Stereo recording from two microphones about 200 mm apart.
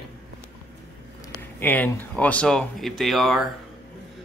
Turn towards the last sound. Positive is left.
turn(degrees=0)  # may be behind; listen again after turning